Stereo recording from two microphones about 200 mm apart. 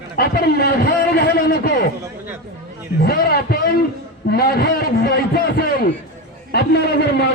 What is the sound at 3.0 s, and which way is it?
A man's voice, 50° left (ahead or behind).